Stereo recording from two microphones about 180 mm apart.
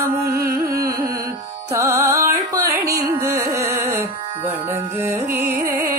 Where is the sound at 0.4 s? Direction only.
55° right (ahead or behind).